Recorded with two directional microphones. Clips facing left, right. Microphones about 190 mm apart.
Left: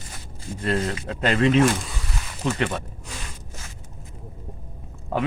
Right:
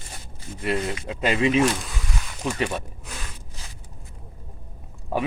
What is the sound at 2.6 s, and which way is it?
Speech, 10° right (ahead or behind).